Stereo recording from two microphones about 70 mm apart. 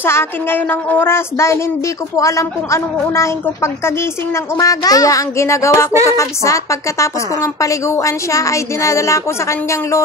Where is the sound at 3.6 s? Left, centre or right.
Left.